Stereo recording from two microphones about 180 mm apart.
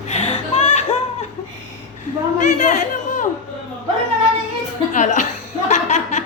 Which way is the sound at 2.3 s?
40° left (ahead or behind).